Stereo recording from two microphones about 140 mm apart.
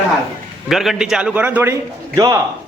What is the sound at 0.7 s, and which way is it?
A man's voice, centre (ahead or behind).